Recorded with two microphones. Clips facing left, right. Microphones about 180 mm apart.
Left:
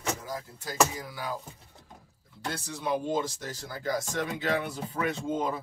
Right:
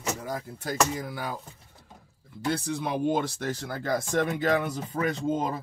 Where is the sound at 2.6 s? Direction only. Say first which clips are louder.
Even; 60° right (ahead or behind).